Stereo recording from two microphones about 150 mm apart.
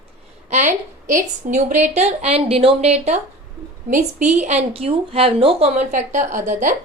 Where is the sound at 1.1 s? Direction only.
60° right (ahead or behind).